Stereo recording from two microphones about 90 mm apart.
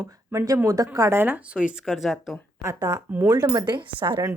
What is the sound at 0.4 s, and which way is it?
Speech, 40° right (ahead or behind).